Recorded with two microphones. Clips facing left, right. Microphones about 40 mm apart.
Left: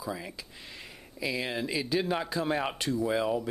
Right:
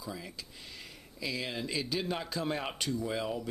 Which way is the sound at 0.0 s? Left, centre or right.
Centre.